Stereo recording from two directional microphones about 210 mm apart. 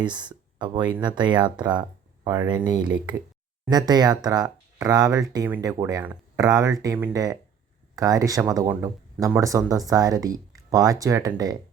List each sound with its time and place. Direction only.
0.1 s speech: 20° right (ahead or behind)